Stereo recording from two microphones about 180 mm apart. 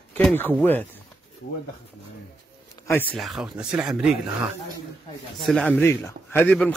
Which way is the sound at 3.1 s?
Centre (ahead or behind).